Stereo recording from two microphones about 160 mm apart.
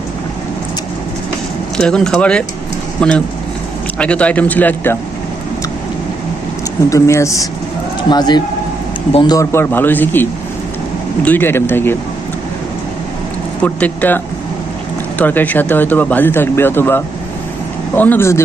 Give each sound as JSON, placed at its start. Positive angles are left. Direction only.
{"t": 1.8, "sound": "speech", "side_deg": 5}
{"t": 6.9, "sound": "speech", "side_deg": 20}
{"t": 13.6, "sound": "speech", "side_deg": 10}
{"t": 15.2, "sound": "speech", "side_deg": 10}